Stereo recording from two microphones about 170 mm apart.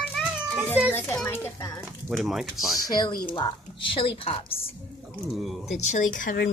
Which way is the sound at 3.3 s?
30° left (ahead or behind).